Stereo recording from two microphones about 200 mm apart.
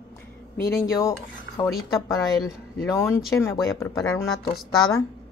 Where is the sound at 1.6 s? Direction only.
20° left (ahead or behind).